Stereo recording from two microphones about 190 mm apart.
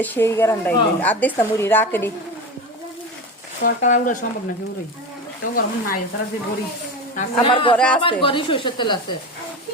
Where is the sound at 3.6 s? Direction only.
40° left (ahead or behind).